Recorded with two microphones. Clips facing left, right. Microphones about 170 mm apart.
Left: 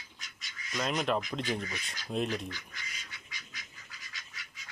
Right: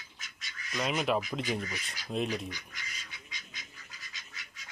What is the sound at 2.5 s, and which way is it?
Duck, 15° right (ahead or behind).